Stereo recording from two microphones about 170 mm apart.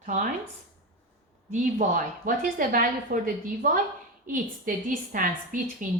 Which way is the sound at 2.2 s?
55° right (ahead or behind).